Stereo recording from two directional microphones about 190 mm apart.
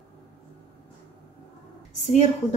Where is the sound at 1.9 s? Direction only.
40° left (ahead or behind).